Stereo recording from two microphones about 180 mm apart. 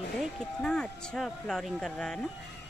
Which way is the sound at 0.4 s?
5° left (ahead or behind).